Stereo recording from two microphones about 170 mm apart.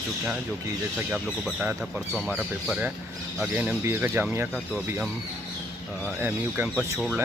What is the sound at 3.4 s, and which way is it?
Speech, 10° right (ahead or behind).